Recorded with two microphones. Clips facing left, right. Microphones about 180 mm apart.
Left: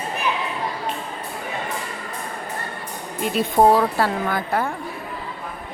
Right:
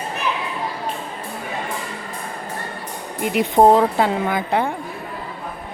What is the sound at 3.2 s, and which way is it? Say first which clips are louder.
Speech: right 2 dB; 15° right (ahead or behind).